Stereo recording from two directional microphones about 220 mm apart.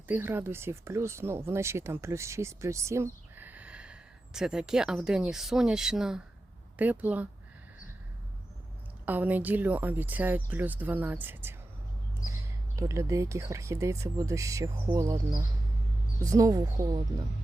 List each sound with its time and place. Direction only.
0.1 s speech: 10° right (ahead or behind)
9.0 s speech: 5° right (ahead or behind)
12.7 s speech: 15° right (ahead or behind)